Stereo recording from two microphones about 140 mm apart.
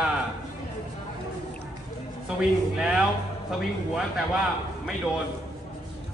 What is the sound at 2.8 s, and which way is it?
Speech, 5° right (ahead or behind).